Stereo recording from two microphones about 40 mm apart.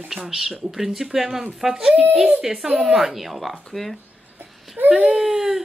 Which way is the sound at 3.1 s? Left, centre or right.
Centre.